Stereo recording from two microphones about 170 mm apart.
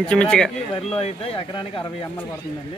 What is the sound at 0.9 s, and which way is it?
Speech, 35° left (ahead or behind).